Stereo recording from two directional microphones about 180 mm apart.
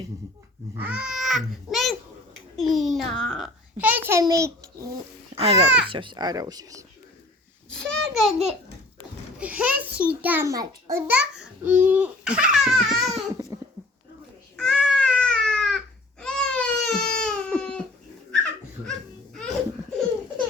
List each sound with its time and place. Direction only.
0.8 s a child's voice: 10° right (ahead or behind)
5.3 s a child's voice: 35° right (ahead or behind)
5.6 s a child's voice: 5° right (ahead or behind)
5.9 s speech: 25° right (ahead or behind)
7.7 s a child's voice: 5° left (ahead or behind)
14.5 s baby cry: 5° left (ahead or behind)
17.6 s a sound: 5° left (ahead or behind)
18.9 s a sound: 5° left (ahead or behind)